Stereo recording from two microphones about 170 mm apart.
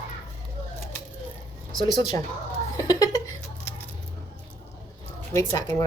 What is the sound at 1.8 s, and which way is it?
Speech, 25° left (ahead or behind).